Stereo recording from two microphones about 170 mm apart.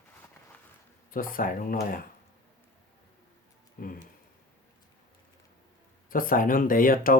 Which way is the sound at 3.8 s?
55° left (ahead or behind).